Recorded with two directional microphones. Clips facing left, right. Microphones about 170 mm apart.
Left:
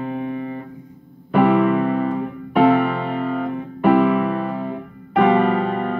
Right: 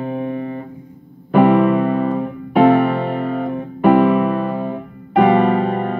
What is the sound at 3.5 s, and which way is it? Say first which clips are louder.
Music: right 3 dB; 25° right (ahead or behind).